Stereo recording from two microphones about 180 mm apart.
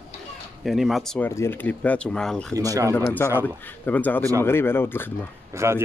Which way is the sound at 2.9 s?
10° left (ahead or behind).